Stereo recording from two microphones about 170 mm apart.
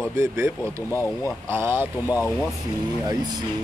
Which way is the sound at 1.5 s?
15° right (ahead or behind).